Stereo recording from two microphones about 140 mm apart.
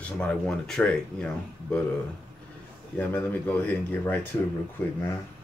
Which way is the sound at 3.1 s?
10° left (ahead or behind).